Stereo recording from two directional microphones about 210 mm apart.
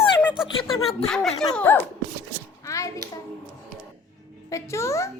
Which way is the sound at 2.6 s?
15° left (ahead or behind).